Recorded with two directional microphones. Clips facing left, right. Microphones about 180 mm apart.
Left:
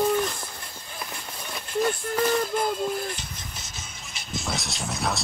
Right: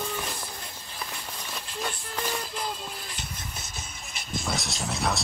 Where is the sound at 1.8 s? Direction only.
50° left (ahead or behind).